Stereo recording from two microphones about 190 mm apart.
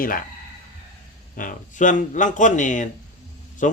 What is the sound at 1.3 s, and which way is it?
A man's voice, 40° left (ahead or behind).